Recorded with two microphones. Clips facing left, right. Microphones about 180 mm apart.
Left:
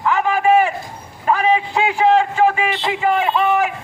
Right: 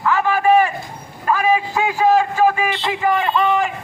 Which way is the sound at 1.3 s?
20° left (ahead or behind).